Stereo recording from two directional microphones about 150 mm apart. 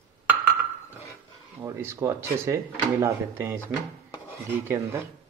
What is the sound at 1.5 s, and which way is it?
Speech, 15° right (ahead or behind).